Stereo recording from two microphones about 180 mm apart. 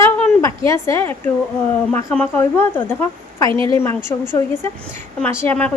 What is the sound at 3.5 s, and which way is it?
Speech, 30° right (ahead or behind).